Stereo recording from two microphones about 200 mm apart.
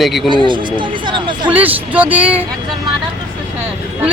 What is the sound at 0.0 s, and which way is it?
Speech, centre (ahead or behind).